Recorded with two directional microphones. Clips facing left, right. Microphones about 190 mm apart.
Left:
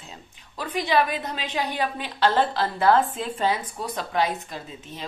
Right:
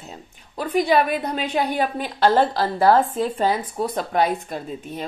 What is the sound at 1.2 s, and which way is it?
Speech, 45° right (ahead or behind).